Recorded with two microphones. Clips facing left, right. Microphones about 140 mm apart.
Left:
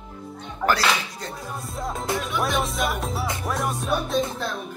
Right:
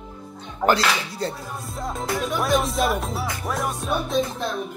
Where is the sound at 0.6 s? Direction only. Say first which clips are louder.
Right 2 dB; 25° right (ahead or behind).